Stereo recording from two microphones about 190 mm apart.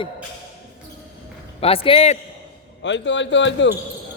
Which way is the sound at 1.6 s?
30° left (ahead or behind).